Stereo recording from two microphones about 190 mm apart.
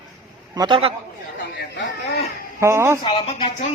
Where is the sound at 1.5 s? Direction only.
65° left (ahead or behind).